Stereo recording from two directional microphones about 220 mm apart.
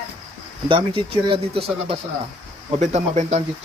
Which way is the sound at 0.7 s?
25° right (ahead or behind).